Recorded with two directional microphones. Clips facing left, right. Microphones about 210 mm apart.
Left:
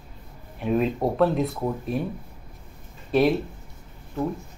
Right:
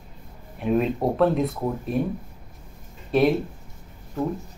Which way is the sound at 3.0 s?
Centre (ahead or behind).